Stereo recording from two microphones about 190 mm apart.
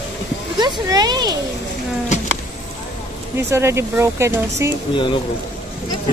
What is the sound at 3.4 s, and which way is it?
Speech, 15° right (ahead or behind).